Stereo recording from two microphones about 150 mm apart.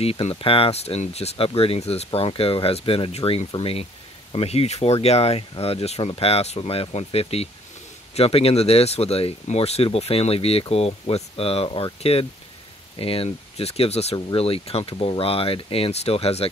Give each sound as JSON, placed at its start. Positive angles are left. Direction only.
{"t": 0.0, "sound": "speech", "side_deg": 40}